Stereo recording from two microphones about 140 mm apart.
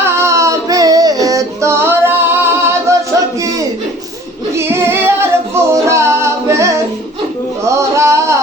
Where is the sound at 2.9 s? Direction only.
20° right (ahead or behind).